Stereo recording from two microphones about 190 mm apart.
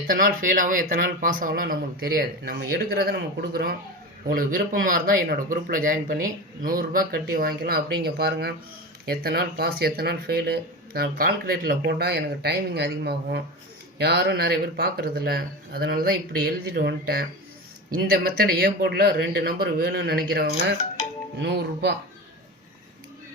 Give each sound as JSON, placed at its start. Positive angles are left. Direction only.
{"t": 0.1, "sound": "speech", "side_deg": -45}